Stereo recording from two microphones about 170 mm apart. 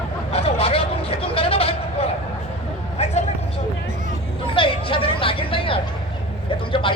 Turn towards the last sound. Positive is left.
turn(degrees=30)  # may be behind; listen again after turning